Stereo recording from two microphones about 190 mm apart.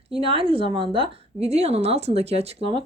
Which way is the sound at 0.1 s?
30° right (ahead or behind).